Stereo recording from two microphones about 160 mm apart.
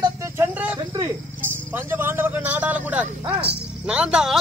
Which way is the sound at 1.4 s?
15° right (ahead or behind).